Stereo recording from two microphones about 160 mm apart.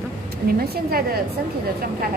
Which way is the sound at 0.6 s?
70° right (ahead or behind).